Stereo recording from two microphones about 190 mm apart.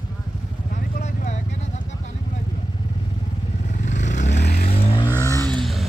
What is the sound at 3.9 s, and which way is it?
Vehicle, 40° left (ahead or behind).